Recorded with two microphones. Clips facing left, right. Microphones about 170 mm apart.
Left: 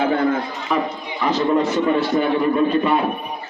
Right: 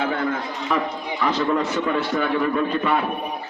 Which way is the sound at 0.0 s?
35° left (ahead or behind).